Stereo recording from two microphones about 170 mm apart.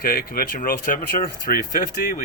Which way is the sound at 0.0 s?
60° left (ahead or behind).